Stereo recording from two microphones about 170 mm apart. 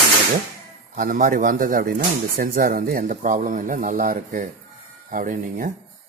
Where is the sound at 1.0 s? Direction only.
50° right (ahead or behind).